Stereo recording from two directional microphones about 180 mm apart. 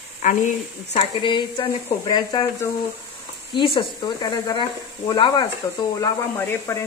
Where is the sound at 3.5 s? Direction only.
25° left (ahead or behind).